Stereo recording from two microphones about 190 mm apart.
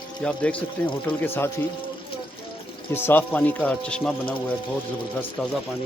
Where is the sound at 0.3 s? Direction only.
10° left (ahead or behind).